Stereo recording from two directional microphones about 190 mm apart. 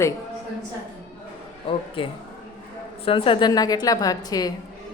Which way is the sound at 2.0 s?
25° left (ahead or behind).